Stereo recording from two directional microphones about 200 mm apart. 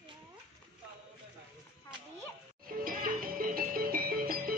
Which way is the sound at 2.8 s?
45° right (ahead or behind).